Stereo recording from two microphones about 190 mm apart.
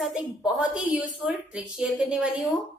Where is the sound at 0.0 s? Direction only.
Centre (ahead or behind).